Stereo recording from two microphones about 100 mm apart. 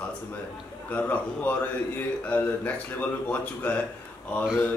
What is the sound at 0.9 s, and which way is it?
A man's voice, 15° left (ahead or behind).